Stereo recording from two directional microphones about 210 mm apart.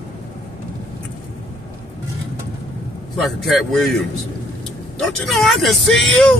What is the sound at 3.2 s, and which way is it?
Speech, centre (ahead or behind).